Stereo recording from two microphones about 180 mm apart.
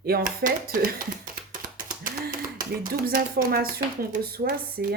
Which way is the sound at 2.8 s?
55° right (ahead or behind).